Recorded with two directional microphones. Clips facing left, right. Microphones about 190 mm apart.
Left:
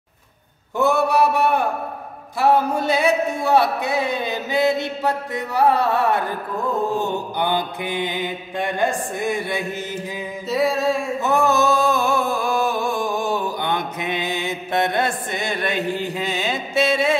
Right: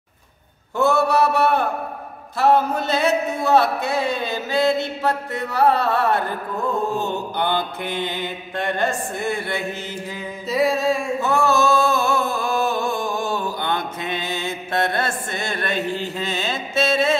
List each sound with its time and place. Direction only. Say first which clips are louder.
0.7 s music: even; 15° left (ahead or behind)
10.5 s music: even; centre (ahead or behind)
11.1 s a sound: left 2 dB; 20° left (ahead or behind)